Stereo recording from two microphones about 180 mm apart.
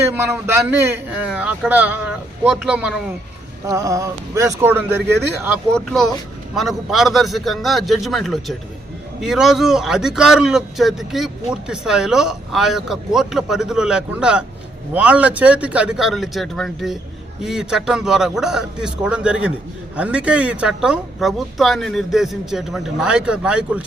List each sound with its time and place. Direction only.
0.0 s a man's voice: 10° right (ahead or behind)
3.7 s a man's voice: 20° right (ahead or behind)
5.7 s a man's voice: centre (ahead or behind)